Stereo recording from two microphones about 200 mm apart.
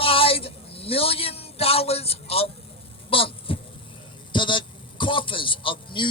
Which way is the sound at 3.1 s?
25° left (ahead or behind).